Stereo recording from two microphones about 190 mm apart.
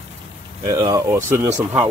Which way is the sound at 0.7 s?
20° right (ahead or behind).